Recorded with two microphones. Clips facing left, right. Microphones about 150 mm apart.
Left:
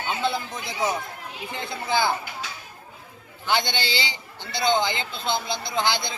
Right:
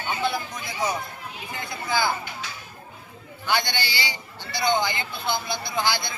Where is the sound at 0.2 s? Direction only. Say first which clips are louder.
Left 1 dB; 25° left (ahead or behind).